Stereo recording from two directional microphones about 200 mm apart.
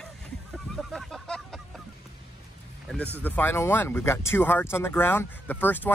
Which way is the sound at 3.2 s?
10° left (ahead or behind).